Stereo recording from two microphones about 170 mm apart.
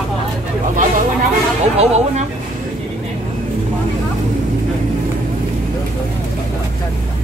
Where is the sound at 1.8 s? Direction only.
40° right (ahead or behind).